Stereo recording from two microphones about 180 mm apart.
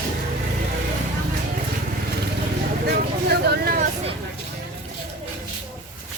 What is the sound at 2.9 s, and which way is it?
Speech, 65° right (ahead or behind).